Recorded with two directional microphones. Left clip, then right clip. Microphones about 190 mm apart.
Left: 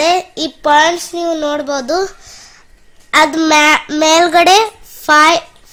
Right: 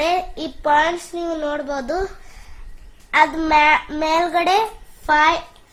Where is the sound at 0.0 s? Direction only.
60° left (ahead or behind).